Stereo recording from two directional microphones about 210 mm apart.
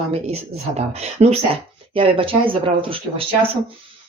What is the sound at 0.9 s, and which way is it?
Speech, 30° right (ahead or behind).